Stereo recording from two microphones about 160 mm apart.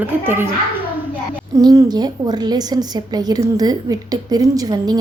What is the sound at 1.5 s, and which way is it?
A woman's voice, 20° right (ahead or behind).